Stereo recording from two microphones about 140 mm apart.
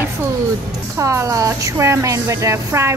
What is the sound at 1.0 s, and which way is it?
A woman's voice, 20° right (ahead or behind).